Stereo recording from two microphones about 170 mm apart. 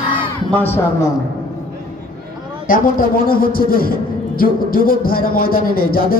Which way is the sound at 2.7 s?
55° left (ahead or behind).